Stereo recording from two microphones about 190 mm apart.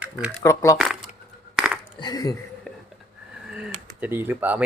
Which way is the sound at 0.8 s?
Centre (ahead or behind).